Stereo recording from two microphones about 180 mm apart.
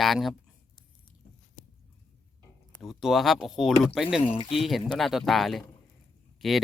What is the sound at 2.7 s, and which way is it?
Speech, centre (ahead or behind).